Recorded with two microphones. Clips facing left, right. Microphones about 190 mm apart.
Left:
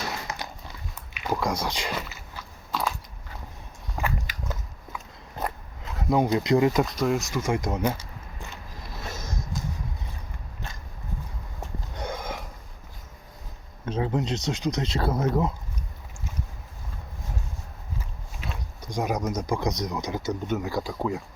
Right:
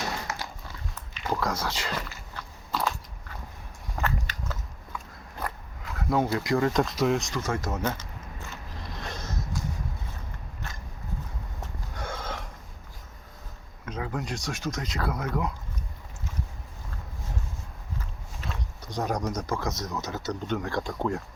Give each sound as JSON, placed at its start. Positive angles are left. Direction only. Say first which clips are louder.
{"t": 0.3, "sound": "horse", "louder": "even", "side_deg": 20}
{"t": 1.1, "sound": "biting", "louder": "left 2 dB", "side_deg": 10}
{"t": 4.0, "sound": "biting", "louder": "left 1 dB", "side_deg": 10}
{"t": 5.4, "sound": "zipper", "louder": "left 4 dB", "side_deg": 20}
{"t": 6.8, "sound": "speech", "louder": "even", "side_deg": 0}
{"t": 9.0, "sound": "a sound", "louder": "left 1 dB", "side_deg": 10}
{"t": 11.9, "sound": "sniff", "louder": "left 2 dB", "side_deg": 15}
{"t": 13.8, "sound": "speech", "louder": "left 6 dB", "side_deg": 30}
{"t": 18.3, "sound": "speech", "louder": "left 1 dB", "side_deg": 10}